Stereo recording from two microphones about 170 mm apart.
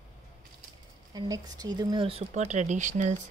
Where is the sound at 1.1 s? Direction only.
20° right (ahead or behind).